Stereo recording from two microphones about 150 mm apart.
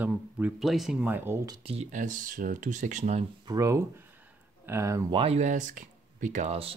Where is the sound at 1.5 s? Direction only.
40° right (ahead or behind).